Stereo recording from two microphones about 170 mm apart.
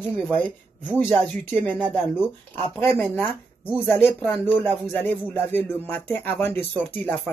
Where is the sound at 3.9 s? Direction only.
10° left (ahead or behind).